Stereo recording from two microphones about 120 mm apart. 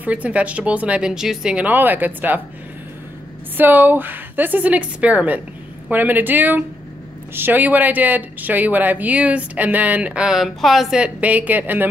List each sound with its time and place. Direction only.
0.0 s speech: 10° right (ahead or behind)
3.5 s speech: 15° right (ahead or behind)